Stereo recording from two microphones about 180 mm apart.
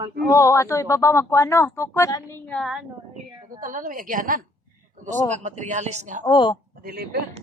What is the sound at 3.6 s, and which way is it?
Speech, 45° right (ahead or behind).